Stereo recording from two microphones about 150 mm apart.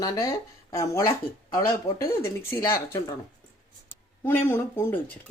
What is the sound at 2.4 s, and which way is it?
Speech, 15° left (ahead or behind).